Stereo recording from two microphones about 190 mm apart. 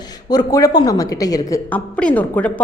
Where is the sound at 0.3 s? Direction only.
20° left (ahead or behind).